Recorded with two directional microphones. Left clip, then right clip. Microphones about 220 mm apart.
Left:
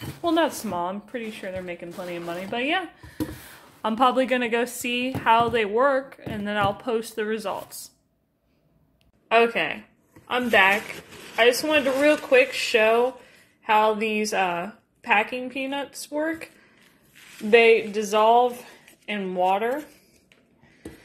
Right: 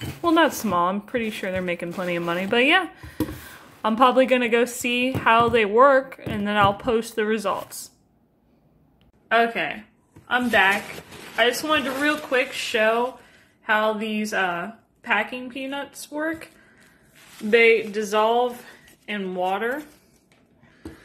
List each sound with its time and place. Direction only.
0.2 s speech: 5° right (ahead or behind)
3.8 s a woman's voice: centre (ahead or behind)
9.3 s a woman's voice: 15° left (ahead or behind)